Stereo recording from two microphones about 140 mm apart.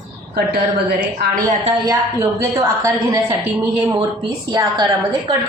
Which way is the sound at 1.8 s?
20° right (ahead or behind).